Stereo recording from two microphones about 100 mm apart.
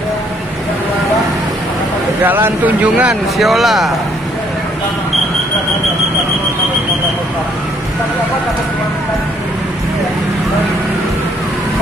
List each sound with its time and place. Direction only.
2.2 s speech: 20° right (ahead or behind)
3.3 s speech: centre (ahead or behind)